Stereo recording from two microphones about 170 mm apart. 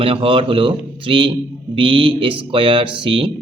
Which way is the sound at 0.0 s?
30° right (ahead or behind).